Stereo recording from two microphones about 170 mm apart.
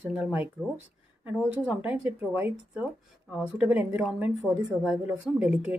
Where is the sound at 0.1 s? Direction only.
10° right (ahead or behind).